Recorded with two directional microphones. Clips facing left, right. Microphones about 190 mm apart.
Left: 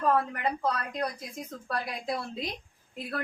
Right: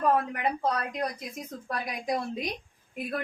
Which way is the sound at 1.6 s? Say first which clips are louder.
Right 1 dB; 20° right (ahead or behind).